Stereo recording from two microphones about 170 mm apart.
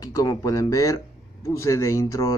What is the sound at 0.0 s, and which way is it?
Speech, 20° left (ahead or behind).